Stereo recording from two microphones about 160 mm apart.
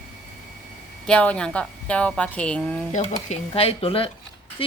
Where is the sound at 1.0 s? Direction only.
5° left (ahead or behind).